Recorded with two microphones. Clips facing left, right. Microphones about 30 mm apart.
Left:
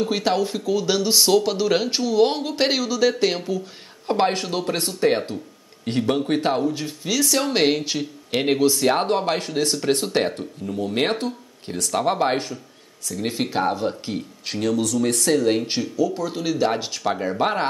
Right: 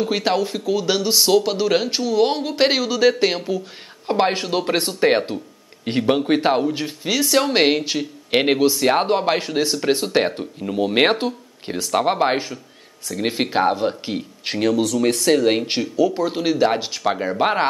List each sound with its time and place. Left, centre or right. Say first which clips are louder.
0.0 s speech: right 1 dB; centre
8.3 s speech: right 4 dB; right
8.5 s speech: right 2 dB; centre
10.6 s speech: right 6 dB; right; by 12.5 s centre
13.1 s speech: right 3 dB; right